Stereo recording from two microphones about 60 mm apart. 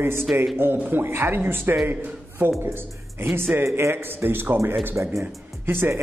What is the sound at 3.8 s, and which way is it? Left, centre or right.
Speech, right.